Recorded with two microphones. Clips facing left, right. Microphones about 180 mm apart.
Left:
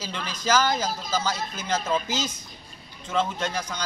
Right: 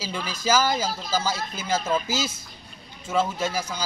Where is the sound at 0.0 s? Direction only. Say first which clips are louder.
Right 2 dB; 10° right (ahead or behind).